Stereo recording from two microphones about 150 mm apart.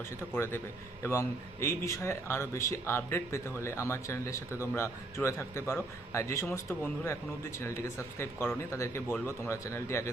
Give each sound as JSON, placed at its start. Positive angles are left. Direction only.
{"t": 0.2, "sound": "a man's voice", "side_deg": 15}